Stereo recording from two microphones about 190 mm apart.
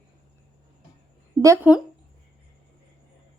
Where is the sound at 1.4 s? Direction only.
15° right (ahead or behind).